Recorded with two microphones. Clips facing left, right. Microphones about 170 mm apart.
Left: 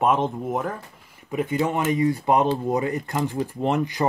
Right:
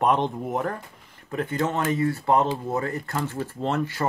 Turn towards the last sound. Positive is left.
turn(degrees=15)  # may be behind; listen again after turning